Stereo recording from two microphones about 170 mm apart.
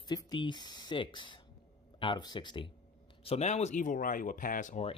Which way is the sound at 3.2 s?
40° left (ahead or behind).